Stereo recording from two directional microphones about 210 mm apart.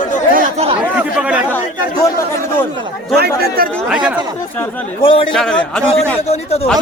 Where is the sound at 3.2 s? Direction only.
45° right (ahead or behind).